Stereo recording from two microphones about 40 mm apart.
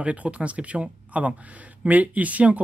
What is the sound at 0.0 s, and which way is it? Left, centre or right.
Speech, right.